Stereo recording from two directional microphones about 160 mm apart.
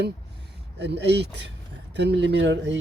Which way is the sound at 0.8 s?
90° right.